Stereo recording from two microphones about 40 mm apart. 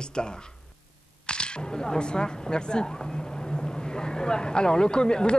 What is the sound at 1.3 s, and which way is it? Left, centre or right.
Speech, left.